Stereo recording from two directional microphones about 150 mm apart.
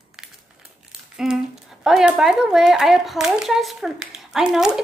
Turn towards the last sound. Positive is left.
turn(degrees=-5)  # may be behind; listen again after turning